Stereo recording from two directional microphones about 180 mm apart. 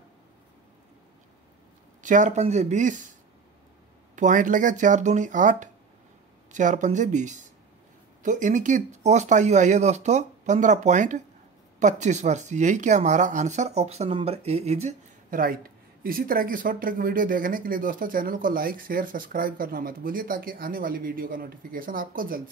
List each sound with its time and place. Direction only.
2.0 s speech: 45° right (ahead or behind)
4.1 s speech: 45° right (ahead or behind)